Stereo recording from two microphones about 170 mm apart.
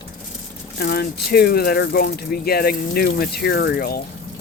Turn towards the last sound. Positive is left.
turn(degrees=65)  # may be behind; listen again after turning